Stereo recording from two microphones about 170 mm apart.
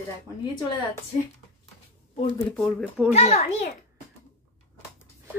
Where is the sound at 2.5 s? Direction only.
5° left (ahead or behind).